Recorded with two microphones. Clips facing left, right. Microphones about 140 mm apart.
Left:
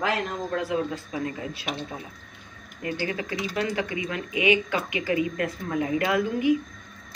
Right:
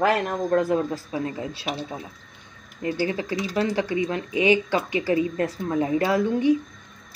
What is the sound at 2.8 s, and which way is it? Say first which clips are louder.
Speech: right 4 dB; 30° right (ahead or behind).